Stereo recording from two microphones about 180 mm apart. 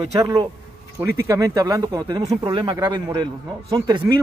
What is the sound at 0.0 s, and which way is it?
Speech, 25° right (ahead or behind).